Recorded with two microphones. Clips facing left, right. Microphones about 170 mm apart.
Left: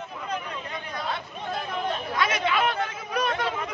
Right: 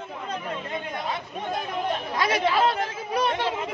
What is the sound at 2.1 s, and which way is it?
Chatter, 35° right (ahead or behind).